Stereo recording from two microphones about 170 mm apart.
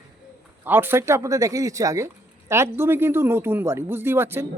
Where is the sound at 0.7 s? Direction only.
10° right (ahead or behind).